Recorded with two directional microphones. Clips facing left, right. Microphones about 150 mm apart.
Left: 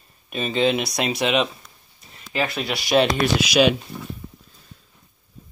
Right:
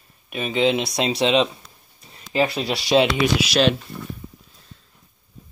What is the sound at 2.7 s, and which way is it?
Speech, 35° right (ahead or behind).